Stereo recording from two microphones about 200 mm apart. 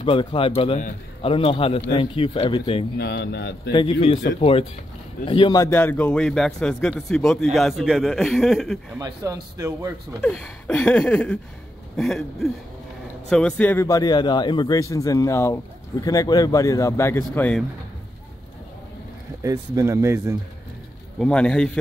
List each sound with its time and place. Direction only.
0.0 s speech: 25° left (ahead or behind)
3.0 s speech: 55° left (ahead or behind)
3.7 s a man's voice: 25° left (ahead or behind); by 8.7 s centre (ahead or behind)
8.9 s a man's voice: 15° right (ahead or behind)
10.2 s a man's voice: 5° left (ahead or behind)
19.4 s a man's voice: 15° right (ahead or behind)
21.2 s a man's voice: 5° left (ahead or behind)